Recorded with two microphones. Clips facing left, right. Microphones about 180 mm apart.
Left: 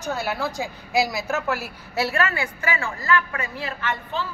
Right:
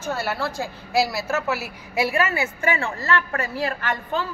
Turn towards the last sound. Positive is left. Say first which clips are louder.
# right 2 dB
turn(degrees=-45)  # may be behind; listen again after turning